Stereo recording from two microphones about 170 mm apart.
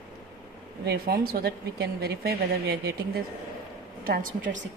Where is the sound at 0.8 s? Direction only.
65° right (ahead or behind).